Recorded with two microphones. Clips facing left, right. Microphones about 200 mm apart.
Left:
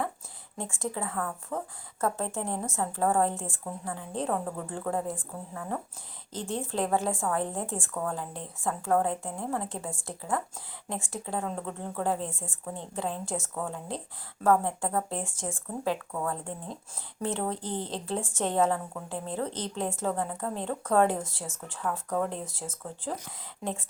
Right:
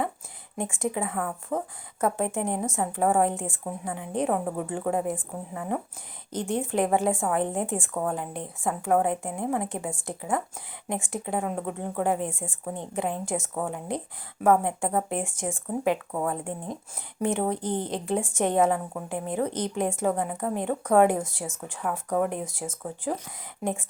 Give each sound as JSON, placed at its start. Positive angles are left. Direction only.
{"t": 0.5, "sound": "a woman's voice", "side_deg": -15}